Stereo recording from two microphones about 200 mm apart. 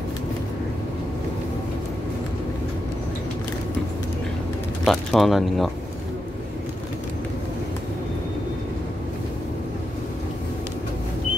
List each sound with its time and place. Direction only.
4.8 s speech: centre (ahead or behind)